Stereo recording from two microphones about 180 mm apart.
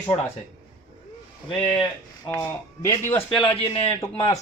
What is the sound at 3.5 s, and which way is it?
Speech, 30° left (ahead or behind).